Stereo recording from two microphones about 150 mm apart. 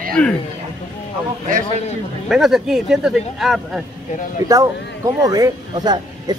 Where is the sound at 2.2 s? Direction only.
Centre (ahead or behind).